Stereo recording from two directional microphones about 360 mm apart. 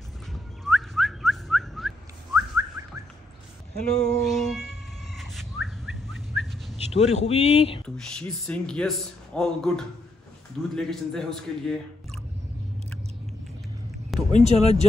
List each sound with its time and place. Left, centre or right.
0.3 s whistling: centre
3.7 s speech: centre
4.2 s cat: centre
6.9 s speech: centre
7.8 s speech: centre
14.3 s speech: centre